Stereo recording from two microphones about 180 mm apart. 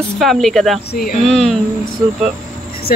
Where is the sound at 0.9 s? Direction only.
50° left (ahead or behind).